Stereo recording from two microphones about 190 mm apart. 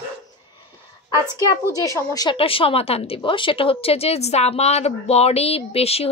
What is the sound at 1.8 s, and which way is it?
Speech, 15° left (ahead or behind).